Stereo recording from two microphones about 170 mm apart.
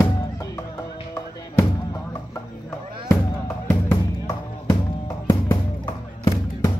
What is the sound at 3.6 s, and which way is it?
Music, 15° left (ahead or behind).